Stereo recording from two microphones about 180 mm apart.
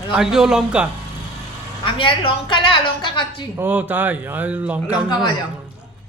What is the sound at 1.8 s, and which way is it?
A woman's voice, 30° left (ahead or behind).